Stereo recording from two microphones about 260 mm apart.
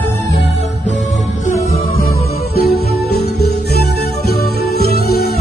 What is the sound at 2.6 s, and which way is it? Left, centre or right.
Music, left.